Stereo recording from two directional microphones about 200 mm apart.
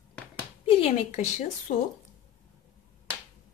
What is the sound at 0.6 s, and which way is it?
A woman's voice, 30° left (ahead or behind).